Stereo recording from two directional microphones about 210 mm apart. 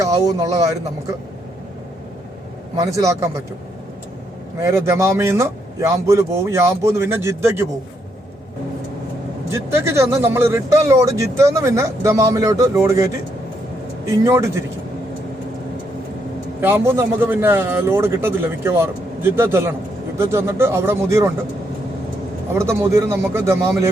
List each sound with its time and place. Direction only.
0.0 s speech: 15° right (ahead or behind)
2.7 s speech: 15° right (ahead or behind)
4.6 s speech: 15° right (ahead or behind)
9.5 s speech: 10° right (ahead or behind)
16.6 s speech: 10° right (ahead or behind)
22.5 s speech: 15° right (ahead or behind)